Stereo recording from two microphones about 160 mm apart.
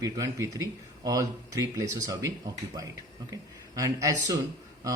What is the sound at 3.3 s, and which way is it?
Speech, 20° right (ahead or behind).